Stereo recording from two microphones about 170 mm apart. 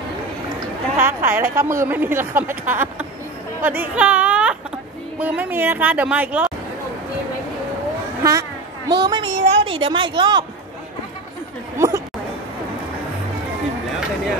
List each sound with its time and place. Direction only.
0.9 s a woman's voice: 15° right (ahead or behind)
8.2 s a sound: 20° right (ahead or behind)
9.4 s a woman's voice: 30° right (ahead or behind)
11.8 s chatter: 15° right (ahead or behind)